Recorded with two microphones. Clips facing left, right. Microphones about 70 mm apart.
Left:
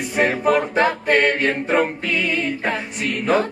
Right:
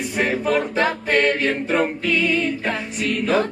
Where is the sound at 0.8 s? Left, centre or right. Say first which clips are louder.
Left 2 dB; centre.